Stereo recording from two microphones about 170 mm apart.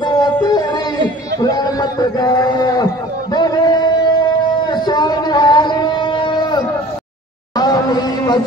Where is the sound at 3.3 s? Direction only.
25° left (ahead or behind).